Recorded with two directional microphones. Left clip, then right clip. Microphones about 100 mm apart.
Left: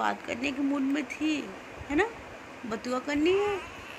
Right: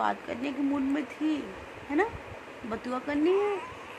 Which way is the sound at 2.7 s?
25° right (ahead or behind).